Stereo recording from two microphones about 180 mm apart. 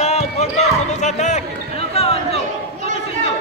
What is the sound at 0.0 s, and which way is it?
Basketball bounce, 35° left (ahead or behind).